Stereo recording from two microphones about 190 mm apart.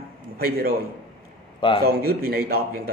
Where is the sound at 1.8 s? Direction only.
55° right (ahead or behind).